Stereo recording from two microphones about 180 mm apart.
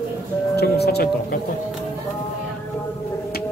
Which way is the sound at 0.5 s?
65° left (ahead or behind).